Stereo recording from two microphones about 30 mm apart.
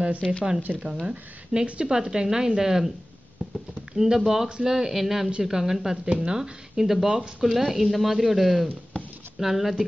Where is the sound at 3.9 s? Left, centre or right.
Centre.